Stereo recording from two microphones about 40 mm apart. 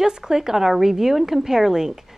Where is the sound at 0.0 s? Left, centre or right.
Centre.